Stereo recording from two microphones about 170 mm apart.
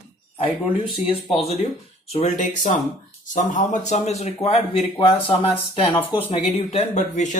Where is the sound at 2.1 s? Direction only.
45° left (ahead or behind).